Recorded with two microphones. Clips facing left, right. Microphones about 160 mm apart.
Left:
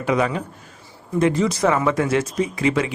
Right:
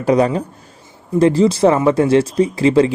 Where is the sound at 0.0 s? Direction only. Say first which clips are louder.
Right 6 dB; 35° right (ahead or behind).